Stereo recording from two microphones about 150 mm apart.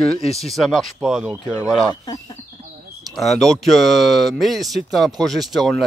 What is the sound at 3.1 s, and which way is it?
Speech, centre (ahead or behind).